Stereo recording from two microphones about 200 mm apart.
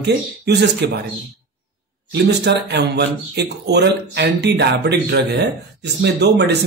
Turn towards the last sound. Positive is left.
turn(degrees=-60)  # may be behind; listen again after turning